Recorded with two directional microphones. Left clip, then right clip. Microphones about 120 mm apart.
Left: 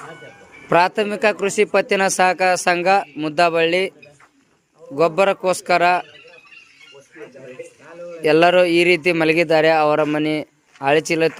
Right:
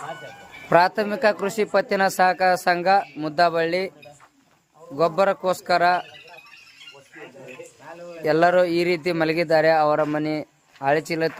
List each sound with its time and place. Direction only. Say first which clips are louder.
0.7 s a man's voice: left 2 dB; 10° left (ahead or behind)
1.7 s a man's voice: left 3 dB; 20° left (ahead or behind)
4.9 s a man's voice: left 4 dB; 20° left (ahead or behind)
8.2 s a man's voice: left 4 dB; 25° left (ahead or behind)